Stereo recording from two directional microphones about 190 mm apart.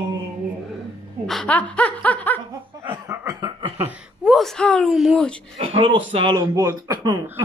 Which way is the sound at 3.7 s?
5° right (ahead or behind).